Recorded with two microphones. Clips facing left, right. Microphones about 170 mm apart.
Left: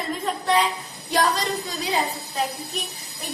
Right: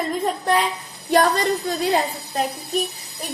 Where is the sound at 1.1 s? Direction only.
55° right (ahead or behind).